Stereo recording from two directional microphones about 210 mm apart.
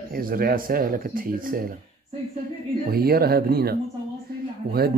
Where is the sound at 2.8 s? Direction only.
45° right (ahead or behind).